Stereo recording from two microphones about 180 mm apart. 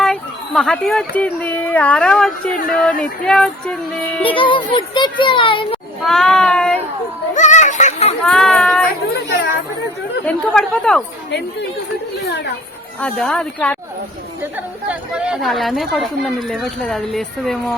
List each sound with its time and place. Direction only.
0.0 s a woman's voice: 5° left (ahead or behind)
4.2 s a child's voice: 30° left (ahead or behind)
6.1 s a woman's voice: 5° left (ahead or behind)
7.3 s speech: 40° left (ahead or behind)
8.2 s a woman's voice: 5° left (ahead or behind)
10.2 s a woman's voice: 5° left (ahead or behind)
12.3 s speech: 70° left (ahead or behind)
13.0 s speech: 5° left (ahead or behind)
14.4 s a woman's voice: 10° right (ahead or behind)